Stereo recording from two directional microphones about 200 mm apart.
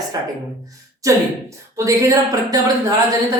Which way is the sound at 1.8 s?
15° right (ahead or behind).